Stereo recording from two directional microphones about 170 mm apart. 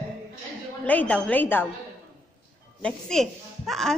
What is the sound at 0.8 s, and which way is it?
Speech, 10° left (ahead or behind).